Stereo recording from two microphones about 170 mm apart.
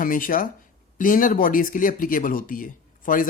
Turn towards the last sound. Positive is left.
turn(degrees=50)  # may be behind; listen again after turning